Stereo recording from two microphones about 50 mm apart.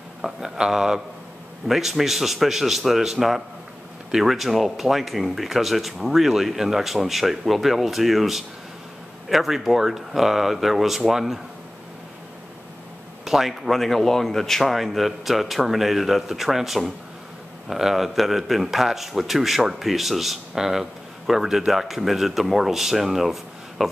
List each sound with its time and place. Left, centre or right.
0.2 s a man's voice: centre
13.2 s a man's voice: centre